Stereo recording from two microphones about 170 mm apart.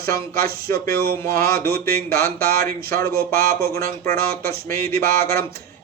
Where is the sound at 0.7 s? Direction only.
60° right (ahead or behind).